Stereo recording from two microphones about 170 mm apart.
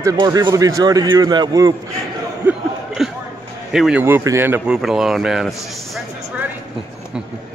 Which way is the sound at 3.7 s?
5° right (ahead or behind).